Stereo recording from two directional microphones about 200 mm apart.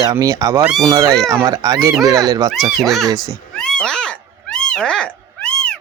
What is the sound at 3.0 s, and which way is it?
Speech, 15° right (ahead or behind).